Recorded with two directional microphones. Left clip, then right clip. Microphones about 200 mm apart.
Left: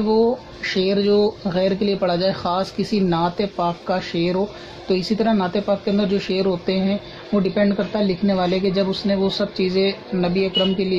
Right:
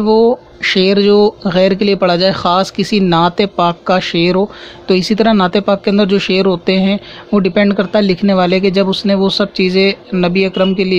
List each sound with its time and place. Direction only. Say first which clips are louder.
0.1 s speech: right 8 dB; 35° right (ahead or behind)